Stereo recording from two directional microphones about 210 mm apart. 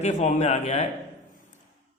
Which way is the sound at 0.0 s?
35° left (ahead or behind).